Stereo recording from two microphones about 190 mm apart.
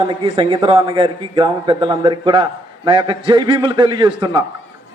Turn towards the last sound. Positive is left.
turn(degrees=-25)  # may be behind; listen again after turning